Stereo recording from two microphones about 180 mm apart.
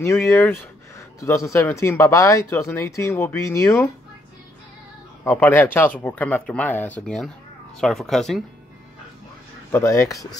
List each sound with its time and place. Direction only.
0.0 s speech: 15° left (ahead or behind)
5.2 s speech: 15° left (ahead or behind)
9.7 s speech: 15° left (ahead or behind)